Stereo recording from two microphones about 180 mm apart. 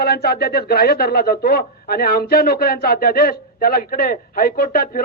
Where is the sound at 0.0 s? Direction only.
60° left (ahead or behind).